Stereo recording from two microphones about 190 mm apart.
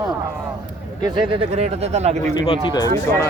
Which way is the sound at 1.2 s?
35° right (ahead or behind).